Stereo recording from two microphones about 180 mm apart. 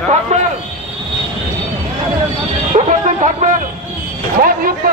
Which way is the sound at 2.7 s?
40° right (ahead or behind).